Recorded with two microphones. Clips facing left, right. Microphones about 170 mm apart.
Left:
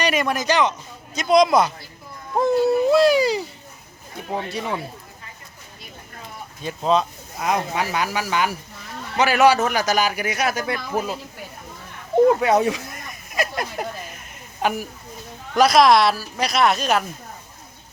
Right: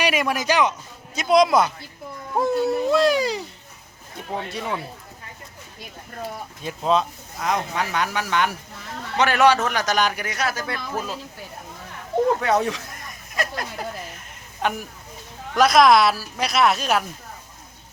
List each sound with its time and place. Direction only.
0.0 s speech: 10° right (ahead or behind)
4.4 s speech: centre (ahead or behind)
6.6 s speech: centre (ahead or behind)
12.4 s speech: 10° left (ahead or behind)